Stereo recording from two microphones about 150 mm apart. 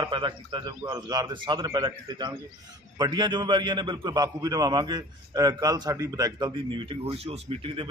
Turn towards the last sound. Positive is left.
turn(degrees=-40)  # may be behind; listen again after turning